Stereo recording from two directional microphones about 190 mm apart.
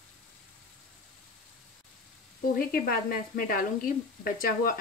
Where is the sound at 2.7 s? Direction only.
50° left (ahead or behind).